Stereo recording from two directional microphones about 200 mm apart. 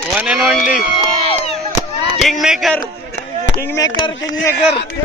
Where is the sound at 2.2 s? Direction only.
Centre (ahead or behind).